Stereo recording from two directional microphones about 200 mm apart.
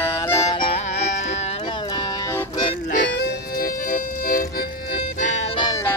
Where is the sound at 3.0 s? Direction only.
60° left (ahead or behind).